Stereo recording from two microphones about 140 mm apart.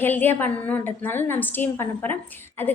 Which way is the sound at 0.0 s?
15° left (ahead or behind).